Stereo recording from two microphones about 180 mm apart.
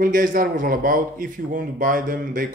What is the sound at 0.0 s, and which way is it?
A man's voice, 50° right (ahead or behind).